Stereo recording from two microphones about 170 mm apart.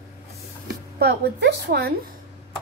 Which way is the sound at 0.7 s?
70° right (ahead or behind).